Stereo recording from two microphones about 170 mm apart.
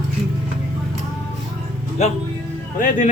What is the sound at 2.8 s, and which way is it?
Speech, 50° left (ahead or behind).